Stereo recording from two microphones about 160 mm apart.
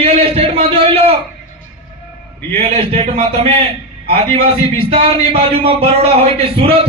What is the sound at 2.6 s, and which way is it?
A man's voice, 35° right (ahead or behind).